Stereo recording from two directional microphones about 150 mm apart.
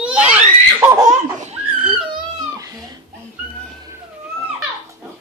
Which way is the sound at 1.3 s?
50° right (ahead or behind).